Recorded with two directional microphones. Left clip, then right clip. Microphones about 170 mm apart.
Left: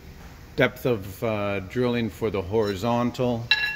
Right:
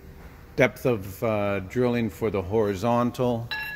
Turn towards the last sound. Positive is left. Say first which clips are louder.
# right 1 dB
turn(degrees=0)  # may be behind; listen again after turning